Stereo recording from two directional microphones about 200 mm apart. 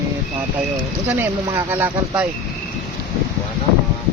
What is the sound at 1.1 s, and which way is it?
Speech, 15° right (ahead or behind).